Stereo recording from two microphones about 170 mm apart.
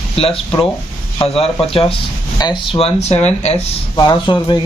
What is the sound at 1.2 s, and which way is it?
Speech, 35° left (ahead or behind).